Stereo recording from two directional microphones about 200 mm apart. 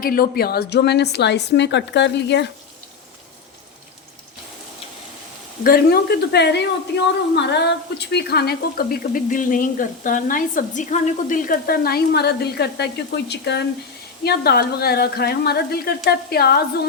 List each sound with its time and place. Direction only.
0.0 s a woman's voice: 50° left (ahead or behind)
5.6 s a woman's voice: 50° left (ahead or behind)